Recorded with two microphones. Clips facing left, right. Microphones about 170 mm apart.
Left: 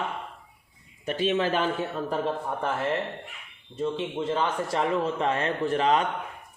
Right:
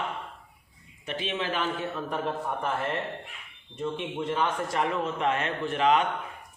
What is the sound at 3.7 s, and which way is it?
Speech, 10° left (ahead or behind).